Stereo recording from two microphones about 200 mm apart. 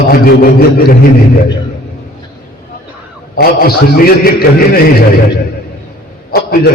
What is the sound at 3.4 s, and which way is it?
A man's voice, 50° left (ahead or behind).